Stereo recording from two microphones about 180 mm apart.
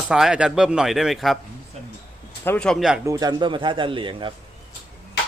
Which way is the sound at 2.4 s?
10° left (ahead or behind).